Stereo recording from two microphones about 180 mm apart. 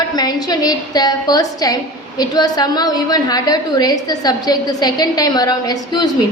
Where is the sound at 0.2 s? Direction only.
20° left (ahead or behind).